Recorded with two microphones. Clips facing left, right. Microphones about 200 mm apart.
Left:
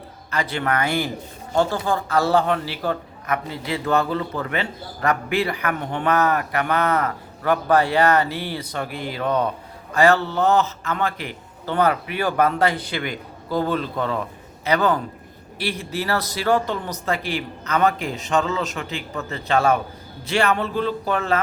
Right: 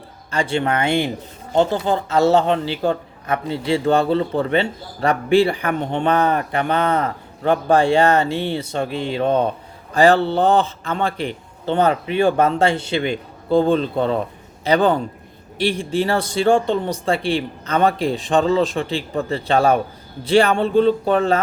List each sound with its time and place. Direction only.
0.3 s speech: 30° right (ahead or behind)